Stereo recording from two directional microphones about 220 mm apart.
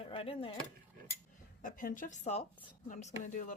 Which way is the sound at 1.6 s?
35° left (ahead or behind).